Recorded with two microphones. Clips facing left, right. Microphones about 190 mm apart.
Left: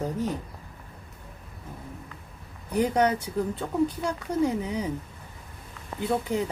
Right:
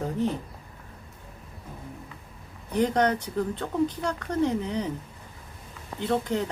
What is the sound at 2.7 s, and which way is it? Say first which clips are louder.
Speech: even; 10° left (ahead or behind).